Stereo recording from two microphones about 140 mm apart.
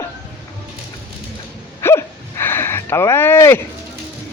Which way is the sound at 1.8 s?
20° left (ahead or behind).